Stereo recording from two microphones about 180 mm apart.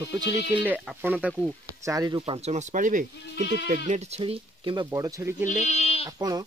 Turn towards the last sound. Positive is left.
turn(degrees=-20)  # may be behind; listen again after turning